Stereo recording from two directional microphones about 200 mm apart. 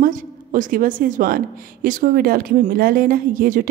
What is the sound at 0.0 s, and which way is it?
A woman's voice, 40° right (ahead or behind).